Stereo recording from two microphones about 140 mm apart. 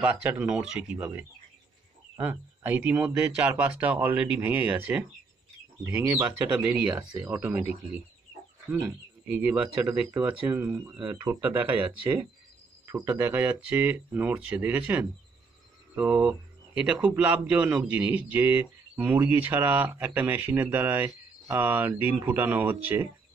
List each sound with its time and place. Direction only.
0.0 s a man's voice: 10° right (ahead or behind)
12.8 s a man's voice: 15° right (ahead or behind)